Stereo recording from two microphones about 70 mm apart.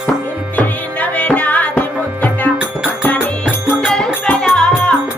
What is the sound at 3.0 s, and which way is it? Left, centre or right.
Music, left.